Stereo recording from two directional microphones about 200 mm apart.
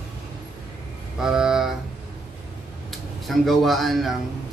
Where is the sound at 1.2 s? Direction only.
5° right (ahead or behind).